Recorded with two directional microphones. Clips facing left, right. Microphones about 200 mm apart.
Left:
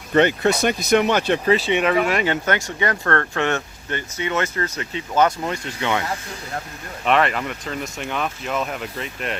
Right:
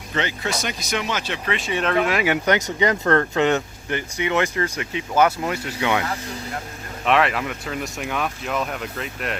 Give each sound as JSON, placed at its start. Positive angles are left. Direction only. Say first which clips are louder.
{"t": 0.1, "sound": "speech", "louder": "left 9 dB", "side_deg": 55}
{"t": 1.5, "sound": "speech", "louder": "left 7 dB", "side_deg": 35}
{"t": 1.8, "sound": "speech", "louder": "left 1 dB", "side_deg": 5}
{"t": 2.2, "sound": "speech", "louder": "right 2 dB", "side_deg": -15}
{"t": 7.0, "sound": "speech", "louder": "even", "side_deg": 0}